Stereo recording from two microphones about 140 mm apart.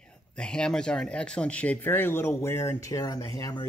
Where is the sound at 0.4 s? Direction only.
5° left (ahead or behind).